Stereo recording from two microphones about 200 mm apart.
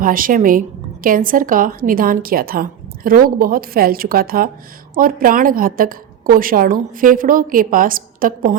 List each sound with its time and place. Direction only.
0.0 s a woman's voice: 45° right (ahead or behind)